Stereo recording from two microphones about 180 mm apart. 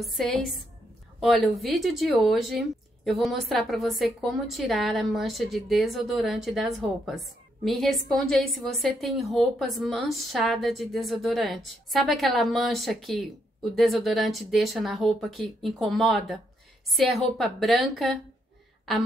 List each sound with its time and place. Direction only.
0.0 s a woman's voice: centre (ahead or behind)